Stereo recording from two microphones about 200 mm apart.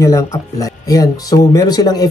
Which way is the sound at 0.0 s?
15° left (ahead or behind).